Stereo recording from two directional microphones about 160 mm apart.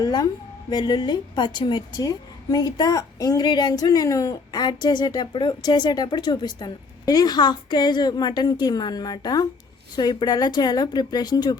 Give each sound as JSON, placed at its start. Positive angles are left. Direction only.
{"t": 0.0, "sound": "a woman's voice", "side_deg": 25}